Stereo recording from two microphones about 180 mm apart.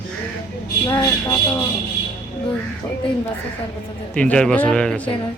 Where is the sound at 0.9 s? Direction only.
15° left (ahead or behind).